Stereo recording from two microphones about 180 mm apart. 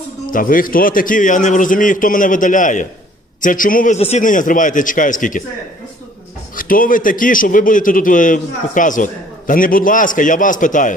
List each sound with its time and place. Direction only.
0.3 s a man's voice: 50° left (ahead or behind)
6.6 s a man's voice: 50° left (ahead or behind)